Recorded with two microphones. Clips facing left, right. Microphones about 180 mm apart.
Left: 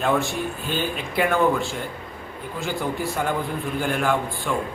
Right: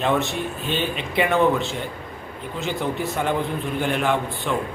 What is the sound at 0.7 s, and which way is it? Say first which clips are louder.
Speech: right 1 dB; 5° left (ahead or behind).